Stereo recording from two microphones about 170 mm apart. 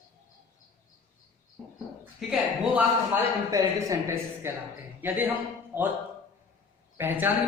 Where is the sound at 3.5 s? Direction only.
20° right (ahead or behind).